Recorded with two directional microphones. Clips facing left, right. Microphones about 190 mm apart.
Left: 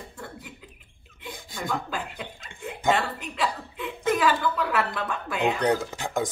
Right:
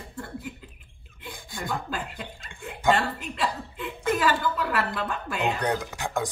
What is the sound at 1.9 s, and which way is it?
Speech, centre (ahead or behind).